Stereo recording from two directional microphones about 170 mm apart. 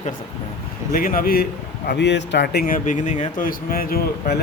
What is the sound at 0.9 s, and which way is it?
A man's voice, 55° left (ahead or behind).